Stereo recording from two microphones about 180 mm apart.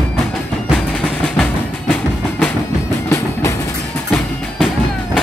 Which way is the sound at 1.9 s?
10° left (ahead or behind).